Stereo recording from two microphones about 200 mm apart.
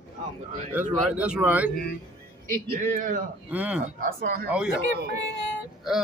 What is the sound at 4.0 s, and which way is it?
Speech, 45° right (ahead or behind).